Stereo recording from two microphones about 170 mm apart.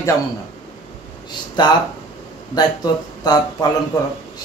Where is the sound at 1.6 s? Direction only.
25° left (ahead or behind).